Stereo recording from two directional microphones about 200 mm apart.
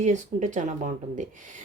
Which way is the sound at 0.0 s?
35° right (ahead or behind).